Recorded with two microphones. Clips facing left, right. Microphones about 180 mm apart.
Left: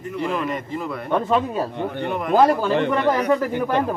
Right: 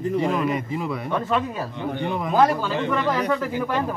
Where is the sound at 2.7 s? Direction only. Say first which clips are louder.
Left 4 dB; 60° left (ahead or behind).